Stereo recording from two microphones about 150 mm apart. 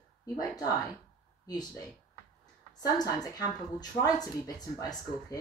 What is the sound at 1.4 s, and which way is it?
Speech, 25° left (ahead or behind).